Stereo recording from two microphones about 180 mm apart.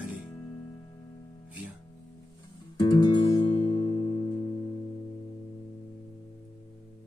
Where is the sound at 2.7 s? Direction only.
25° left (ahead or behind).